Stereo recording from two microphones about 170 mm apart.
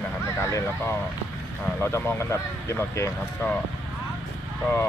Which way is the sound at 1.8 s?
15° left (ahead or behind).